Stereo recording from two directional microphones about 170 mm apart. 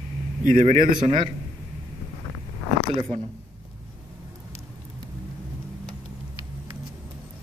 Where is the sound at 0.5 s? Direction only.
50° right (ahead or behind).